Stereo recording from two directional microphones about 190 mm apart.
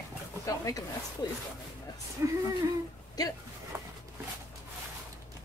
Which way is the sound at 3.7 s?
15° right (ahead or behind).